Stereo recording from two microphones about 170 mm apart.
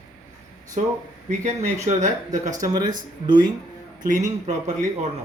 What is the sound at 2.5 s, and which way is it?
Speech, 20° right (ahead or behind).